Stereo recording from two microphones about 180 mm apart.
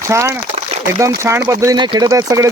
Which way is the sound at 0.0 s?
15° right (ahead or behind).